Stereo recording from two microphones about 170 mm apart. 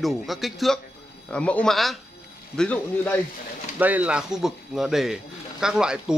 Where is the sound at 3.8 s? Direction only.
10° right (ahead or behind).